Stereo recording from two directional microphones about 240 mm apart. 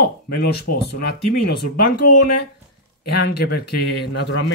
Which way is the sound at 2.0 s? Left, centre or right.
Left.